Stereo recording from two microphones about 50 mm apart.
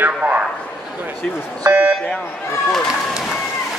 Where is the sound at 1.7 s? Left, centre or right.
Right.